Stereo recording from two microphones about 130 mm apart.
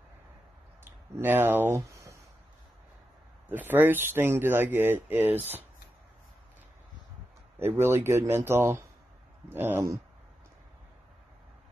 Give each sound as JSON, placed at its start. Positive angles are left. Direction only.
{"t": 0.8, "sound": "speech", "side_deg": -15}
{"t": 3.4, "sound": "speech", "side_deg": -15}
{"t": 7.5, "sound": "speech", "side_deg": -20}